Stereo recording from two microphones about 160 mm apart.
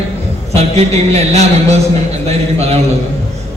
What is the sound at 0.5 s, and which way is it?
A man's voice, 40° right (ahead or behind).